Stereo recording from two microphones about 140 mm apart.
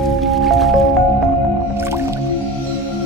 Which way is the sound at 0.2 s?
Centre (ahead or behind).